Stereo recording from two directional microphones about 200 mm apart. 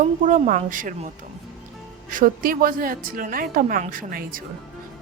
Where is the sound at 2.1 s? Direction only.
45° right (ahead or behind).